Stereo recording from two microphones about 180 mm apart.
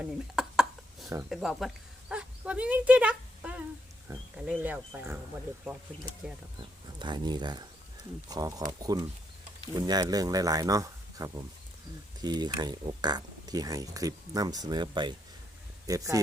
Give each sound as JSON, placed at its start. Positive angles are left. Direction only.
{"t": 0.0, "sound": "a sound", "side_deg": -5}
{"t": 1.3, "sound": "speech", "side_deg": 0}
{"t": 6.2, "sound": "speech", "side_deg": -5}
{"t": 6.6, "sound": "speech", "side_deg": -25}